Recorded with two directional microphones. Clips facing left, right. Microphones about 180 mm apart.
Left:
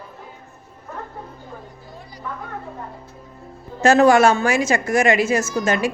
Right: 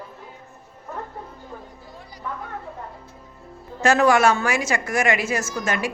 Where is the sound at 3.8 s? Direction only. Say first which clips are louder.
Left 4 dB; 25° left (ahead or behind).